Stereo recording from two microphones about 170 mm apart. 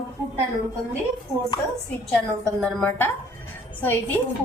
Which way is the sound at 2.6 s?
5° left (ahead or behind).